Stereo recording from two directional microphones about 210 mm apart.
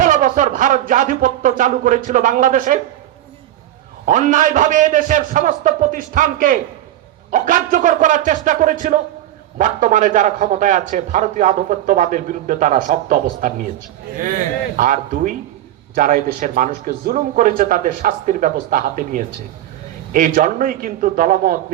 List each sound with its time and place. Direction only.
0.0 s a sound: 40° right (ahead or behind)
4.0 s a man's voice: 35° right (ahead or behind)
14.8 s a man's voice: 40° right (ahead or behind)